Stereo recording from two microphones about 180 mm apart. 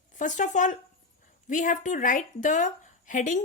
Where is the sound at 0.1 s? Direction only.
45° left (ahead or behind).